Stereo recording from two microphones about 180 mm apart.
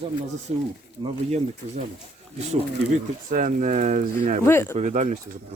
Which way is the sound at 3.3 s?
45° right (ahead or behind).